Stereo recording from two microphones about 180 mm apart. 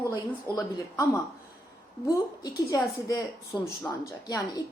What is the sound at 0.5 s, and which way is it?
Speech, 20° left (ahead or behind).